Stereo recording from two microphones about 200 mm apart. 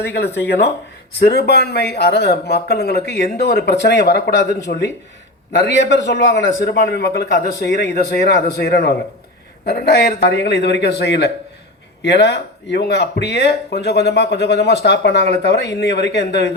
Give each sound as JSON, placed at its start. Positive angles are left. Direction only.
{"t": 1.2, "sound": "speech", "side_deg": 55}